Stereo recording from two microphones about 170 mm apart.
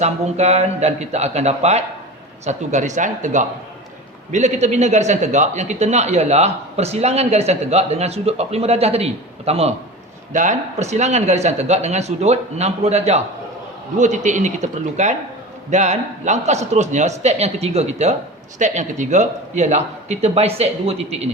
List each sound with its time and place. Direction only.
0.0 s speech: 40° right (ahead or behind)